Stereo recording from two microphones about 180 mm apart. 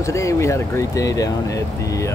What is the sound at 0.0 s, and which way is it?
Speech, 15° left (ahead or behind).